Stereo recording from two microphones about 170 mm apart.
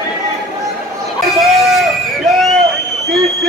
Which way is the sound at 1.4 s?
Centre (ahead or behind).